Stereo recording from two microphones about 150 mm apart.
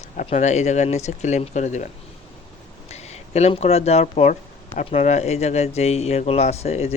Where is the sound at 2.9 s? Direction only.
45° left (ahead or behind).